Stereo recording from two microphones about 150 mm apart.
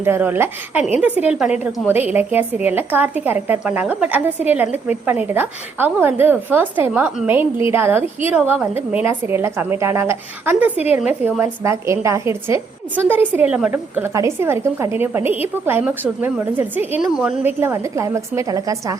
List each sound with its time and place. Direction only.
0.0 s a woman's voice: 15° right (ahead or behind)
8.4 s a woman's voice: 5° right (ahead or behind)
8.7 s a woman's voice: 15° right (ahead or behind)